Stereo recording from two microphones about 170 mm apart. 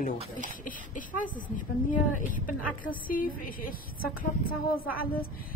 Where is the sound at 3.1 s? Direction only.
55° left (ahead or behind).